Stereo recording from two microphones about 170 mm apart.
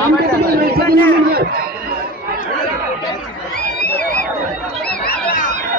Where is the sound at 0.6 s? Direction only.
65° right (ahead or behind).